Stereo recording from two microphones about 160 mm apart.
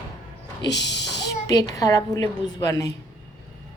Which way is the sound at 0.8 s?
90° left.